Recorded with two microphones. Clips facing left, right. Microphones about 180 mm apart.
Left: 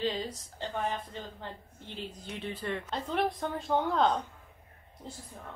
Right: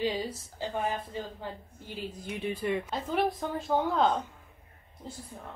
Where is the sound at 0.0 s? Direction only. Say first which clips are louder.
Right 2 dB; 10° right (ahead or behind).